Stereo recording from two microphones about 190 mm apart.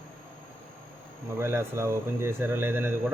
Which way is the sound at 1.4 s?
15° right (ahead or behind).